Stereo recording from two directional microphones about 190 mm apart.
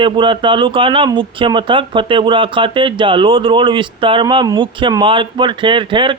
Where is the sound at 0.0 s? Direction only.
25° right (ahead or behind).